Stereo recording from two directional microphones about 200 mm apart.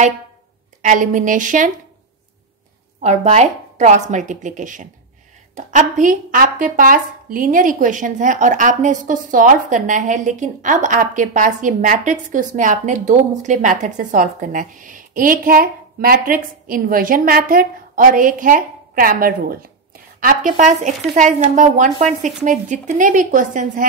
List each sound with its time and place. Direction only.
0.8 s speech: 40° right (ahead or behind)
3.0 s speech: 35° right (ahead or behind)